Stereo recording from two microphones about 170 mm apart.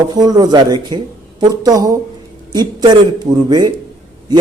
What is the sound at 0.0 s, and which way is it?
A man's voice, 25° right (ahead or behind).